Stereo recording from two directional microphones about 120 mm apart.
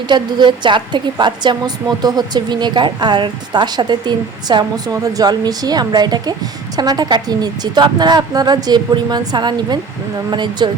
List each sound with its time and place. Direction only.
0.1 s a woman's voice: 40° right (ahead or behind)